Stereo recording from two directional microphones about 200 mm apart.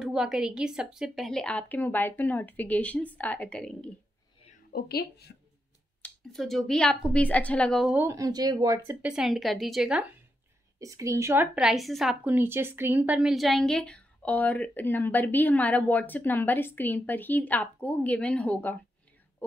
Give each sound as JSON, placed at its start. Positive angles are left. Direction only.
{"t": 0.0, "sound": "a woman's voice", "side_deg": -5}
{"t": 4.7, "sound": "a woman's voice", "side_deg": 50}
{"t": 6.0, "sound": "a woman's voice", "side_deg": 0}
{"t": 7.9, "sound": "speech", "side_deg": -15}
{"t": 9.0, "sound": "a woman's voice", "side_deg": 0}
{"t": 10.8, "sound": "a woman's voice", "side_deg": -15}